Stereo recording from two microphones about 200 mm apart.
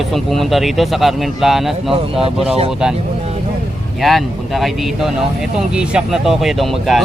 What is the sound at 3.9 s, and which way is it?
Speech, centre (ahead or behind).